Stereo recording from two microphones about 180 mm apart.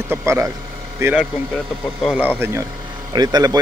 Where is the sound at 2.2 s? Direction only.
10° right (ahead or behind).